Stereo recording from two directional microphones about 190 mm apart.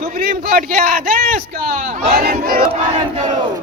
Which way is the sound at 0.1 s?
50° right (ahead or behind).